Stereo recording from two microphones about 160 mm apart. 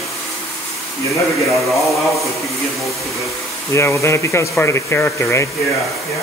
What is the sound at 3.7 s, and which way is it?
Speech, 15° left (ahead or behind).